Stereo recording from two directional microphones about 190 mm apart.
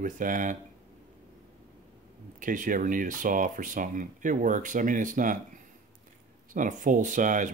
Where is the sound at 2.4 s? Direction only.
45° right (ahead or behind).